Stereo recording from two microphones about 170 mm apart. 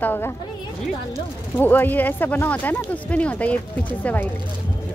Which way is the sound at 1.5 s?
10° left (ahead or behind).